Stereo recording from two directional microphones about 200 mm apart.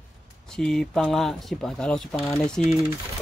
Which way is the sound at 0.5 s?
5° left (ahead or behind).